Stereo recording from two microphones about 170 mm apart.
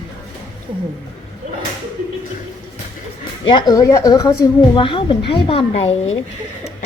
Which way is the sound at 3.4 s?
30° left (ahead or behind).